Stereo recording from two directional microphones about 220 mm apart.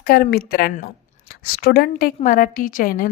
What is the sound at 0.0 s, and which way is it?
A woman's voice, 45° left (ahead or behind).